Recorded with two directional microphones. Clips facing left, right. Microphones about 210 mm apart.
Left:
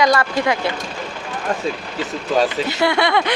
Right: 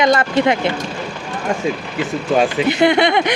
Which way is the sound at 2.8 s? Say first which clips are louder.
Right 3 dB; 20° right (ahead or behind).